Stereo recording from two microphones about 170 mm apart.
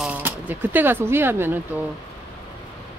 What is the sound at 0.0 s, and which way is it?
Speech, 10° right (ahead or behind).